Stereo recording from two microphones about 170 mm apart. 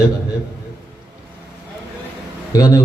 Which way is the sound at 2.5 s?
20° left (ahead or behind).